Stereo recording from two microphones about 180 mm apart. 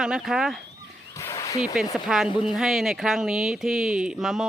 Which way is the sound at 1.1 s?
15° left (ahead or behind).